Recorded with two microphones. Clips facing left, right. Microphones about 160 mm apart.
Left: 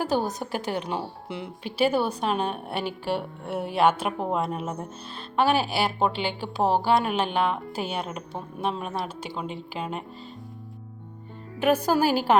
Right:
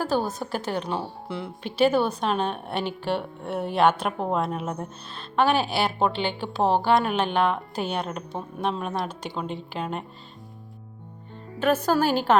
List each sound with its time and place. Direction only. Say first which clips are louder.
0.0 s speech: even; 15° left (ahead or behind)
11.6 s speech: even; 10° left (ahead or behind)